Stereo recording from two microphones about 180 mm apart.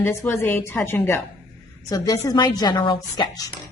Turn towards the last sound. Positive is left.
turn(degrees=20)  # may be behind; listen again after turning